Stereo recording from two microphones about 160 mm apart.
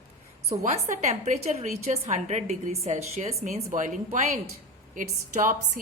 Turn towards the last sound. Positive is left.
turn(degrees=-55)  # may be behind; listen again after turning